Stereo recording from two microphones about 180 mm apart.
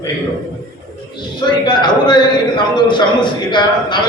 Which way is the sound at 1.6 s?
25° left (ahead or behind).